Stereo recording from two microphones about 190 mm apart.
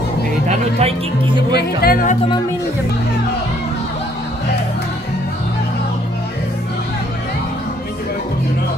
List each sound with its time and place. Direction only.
0.5 s speech: 35° right (ahead or behind)
1.8 s music: 50° left (ahead or behind)